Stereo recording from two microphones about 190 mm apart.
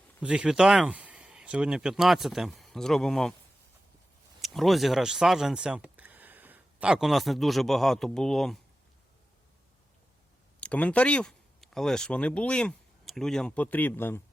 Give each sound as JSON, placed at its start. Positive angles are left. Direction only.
{"t": 0.2, "sound": "speech", "side_deg": -5}
{"t": 4.4, "sound": "speech", "side_deg": 0}
{"t": 10.6, "sound": "speech", "side_deg": 5}